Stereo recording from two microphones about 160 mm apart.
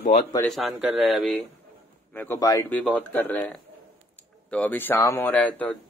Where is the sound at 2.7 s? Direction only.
5° left (ahead or behind).